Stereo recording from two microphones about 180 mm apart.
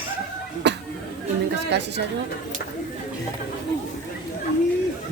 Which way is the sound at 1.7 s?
70° right (ahead or behind).